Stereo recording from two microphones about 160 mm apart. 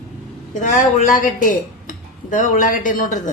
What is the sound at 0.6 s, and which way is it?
Speech, 50° left (ahead or behind).